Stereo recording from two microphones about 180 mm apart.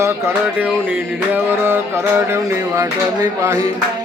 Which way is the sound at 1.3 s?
10° right (ahead or behind).